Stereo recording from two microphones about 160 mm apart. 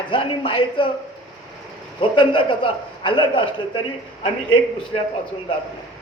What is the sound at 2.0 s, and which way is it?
A woman's voice, 30° left (ahead or behind).